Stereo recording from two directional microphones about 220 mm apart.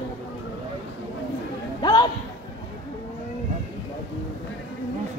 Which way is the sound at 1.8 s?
20° left (ahead or behind).